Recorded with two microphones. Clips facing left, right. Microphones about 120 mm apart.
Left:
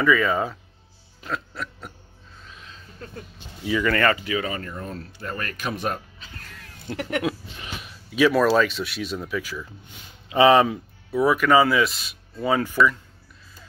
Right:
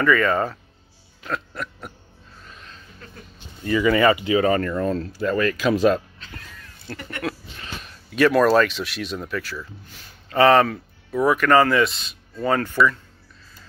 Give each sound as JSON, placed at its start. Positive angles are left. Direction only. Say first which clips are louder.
{"t": 0.0, "sound": "speech", "louder": "right 1 dB", "side_deg": 5}
{"t": 1.2, "sound": "a sound", "louder": "right 2 dB", "side_deg": 0}
{"t": 3.6, "sound": "speech", "louder": "right 3 dB", "side_deg": 0}
{"t": 3.9, "sound": "speech", "louder": "right 6 dB", "side_deg": -15}
{"t": 4.5, "sound": "speech", "louder": "right 11 dB", "side_deg": -80}
{"t": 7.0, "sound": "speech", "louder": "left 9 dB", "side_deg": 90}
{"t": 7.2, "sound": "speech", "louder": "left 2 dB", "side_deg": 15}